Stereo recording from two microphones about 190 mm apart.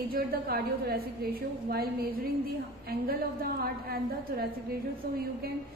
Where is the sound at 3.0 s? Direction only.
55° right (ahead or behind).